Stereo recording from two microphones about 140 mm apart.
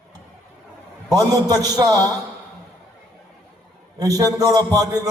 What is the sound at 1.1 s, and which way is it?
A man's voice, 25° right (ahead or behind).